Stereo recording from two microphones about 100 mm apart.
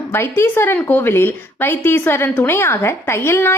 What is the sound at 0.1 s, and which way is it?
A woman's voice, 25° left (ahead or behind).